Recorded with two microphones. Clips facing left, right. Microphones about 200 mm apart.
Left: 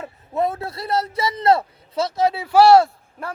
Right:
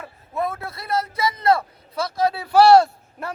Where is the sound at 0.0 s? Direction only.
25° left (ahead or behind).